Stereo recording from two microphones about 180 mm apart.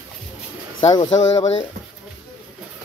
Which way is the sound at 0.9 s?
20° left (ahead or behind).